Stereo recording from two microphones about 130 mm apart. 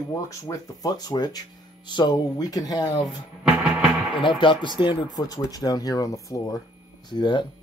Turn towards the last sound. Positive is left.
turn(degrees=35)  # may be behind; listen again after turning